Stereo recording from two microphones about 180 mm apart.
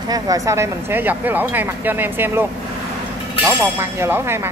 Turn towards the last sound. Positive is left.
turn(degrees=-15)  # may be behind; listen again after turning